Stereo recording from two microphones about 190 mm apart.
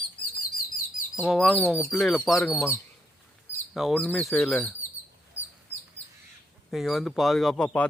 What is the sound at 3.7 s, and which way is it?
Speech, centre (ahead or behind).